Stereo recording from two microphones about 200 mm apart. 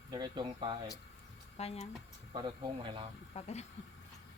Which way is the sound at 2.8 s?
25° right (ahead or behind).